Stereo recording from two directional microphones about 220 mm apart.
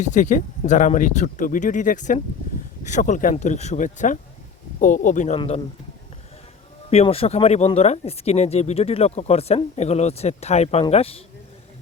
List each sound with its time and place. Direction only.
0.0 s speech: 35° left (ahead or behind)
6.9 s speech: 25° left (ahead or behind)